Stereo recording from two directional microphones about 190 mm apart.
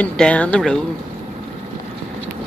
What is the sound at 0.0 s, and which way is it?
Speech, 5° left (ahead or behind).